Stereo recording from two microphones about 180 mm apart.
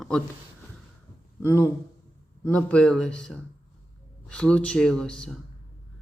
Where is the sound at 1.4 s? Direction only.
10° left (ahead or behind).